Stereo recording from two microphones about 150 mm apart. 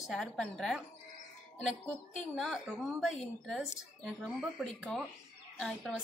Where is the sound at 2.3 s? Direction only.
5° left (ahead or behind).